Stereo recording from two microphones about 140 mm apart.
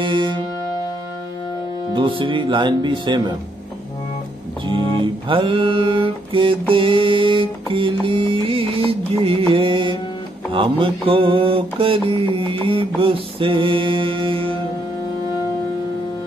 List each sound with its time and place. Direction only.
0.0 s music: 35° right (ahead or behind)
2.0 s mantra: 35° right (ahead or behind)
5.0 s mantra: 35° right (ahead or behind)